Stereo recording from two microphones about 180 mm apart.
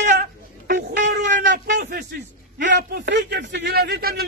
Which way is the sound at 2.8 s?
65° right (ahead or behind).